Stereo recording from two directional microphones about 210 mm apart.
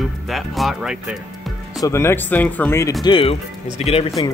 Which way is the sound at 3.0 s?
25° left (ahead or behind).